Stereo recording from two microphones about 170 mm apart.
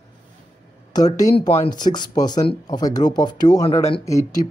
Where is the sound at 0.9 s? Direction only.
20° left (ahead or behind).